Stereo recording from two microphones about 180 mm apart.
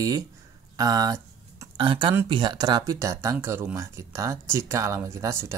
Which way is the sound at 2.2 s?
25° right (ahead or behind).